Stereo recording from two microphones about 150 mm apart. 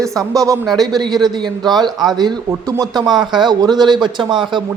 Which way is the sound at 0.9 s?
25° right (ahead or behind).